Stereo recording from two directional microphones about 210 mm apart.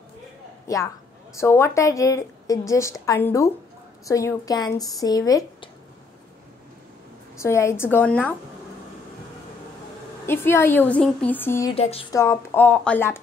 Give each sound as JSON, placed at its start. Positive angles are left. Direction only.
{"t": 0.7, "sound": "a woman's voice", "side_deg": 15}
{"t": 7.3, "sound": "a woman's voice", "side_deg": 15}
{"t": 10.2, "sound": "a woman's voice", "side_deg": 10}
{"t": 11.7, "sound": "speech", "side_deg": 25}
{"t": 12.1, "sound": "a woman's voice", "side_deg": 15}